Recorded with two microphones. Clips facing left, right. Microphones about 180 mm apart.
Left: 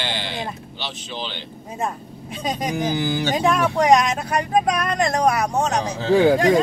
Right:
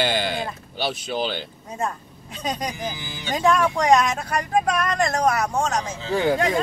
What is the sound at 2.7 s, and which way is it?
Speech, 75° left (ahead or behind).